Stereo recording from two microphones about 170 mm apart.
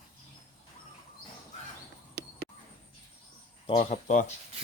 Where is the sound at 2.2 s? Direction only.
75° right (ahead or behind).